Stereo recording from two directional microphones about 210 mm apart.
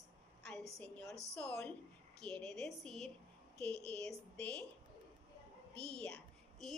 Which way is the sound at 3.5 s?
50° left (ahead or behind).